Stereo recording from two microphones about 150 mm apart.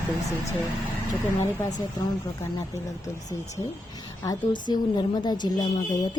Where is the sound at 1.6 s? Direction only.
25° left (ahead or behind).